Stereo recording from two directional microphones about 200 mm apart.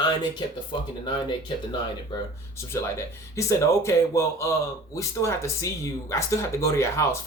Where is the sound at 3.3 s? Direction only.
15° left (ahead or behind).